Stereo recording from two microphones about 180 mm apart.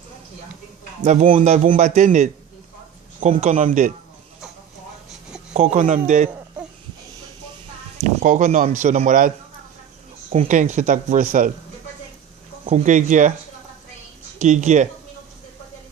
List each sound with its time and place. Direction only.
1.3 s a man's voice: 40° right (ahead or behind)
5.5 s a man's voice: 40° right (ahead or behind)
8.0 s speech: 45° right (ahead or behind)
10.3 s speech: 40° right (ahead or behind)
12.6 s speech: 40° right (ahead or behind)
14.4 s a man's voice: 40° right (ahead or behind)